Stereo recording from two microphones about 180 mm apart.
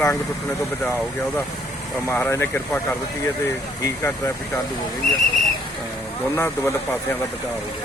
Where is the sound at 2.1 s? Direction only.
15° left (ahead or behind).